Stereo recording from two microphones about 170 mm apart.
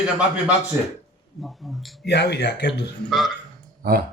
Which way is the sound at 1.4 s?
Centre (ahead or behind).